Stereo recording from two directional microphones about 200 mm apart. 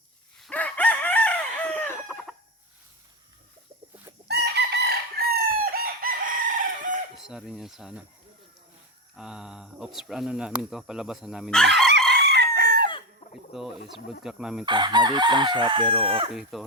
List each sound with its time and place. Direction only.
0.3 s chicken: 5° left (ahead or behind)
4.3 s chicken: 55° right (ahead or behind)
7.2 s speech: centre (ahead or behind)
9.1 s speech: 5° right (ahead or behind)
12.2 s chicken: 55° right (ahead or behind)
13.5 s speech: centre (ahead or behind)
14.6 s chicken: 20° right (ahead or behind)
16.3 s speech: centre (ahead or behind)